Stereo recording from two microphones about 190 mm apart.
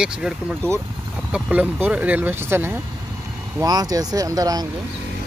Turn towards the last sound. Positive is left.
turn(degrees=-20)  # may be behind; listen again after turning